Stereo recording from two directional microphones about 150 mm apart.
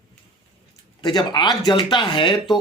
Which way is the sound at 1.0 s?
30° left (ahead or behind).